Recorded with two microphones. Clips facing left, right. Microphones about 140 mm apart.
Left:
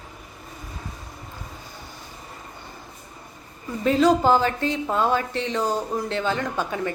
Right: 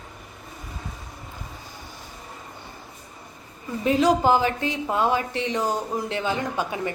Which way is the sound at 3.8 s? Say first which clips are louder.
Left 1 dB; 15° right (ahead or behind).